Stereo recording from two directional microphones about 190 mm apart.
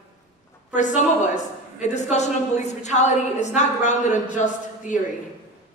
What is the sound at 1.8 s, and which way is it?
A woman's voice, 35° left (ahead or behind).